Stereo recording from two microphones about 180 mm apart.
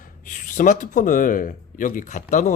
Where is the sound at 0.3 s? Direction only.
45° left (ahead or behind).